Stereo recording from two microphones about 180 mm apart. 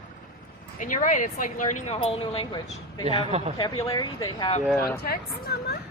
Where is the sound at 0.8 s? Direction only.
45° left (ahead or behind).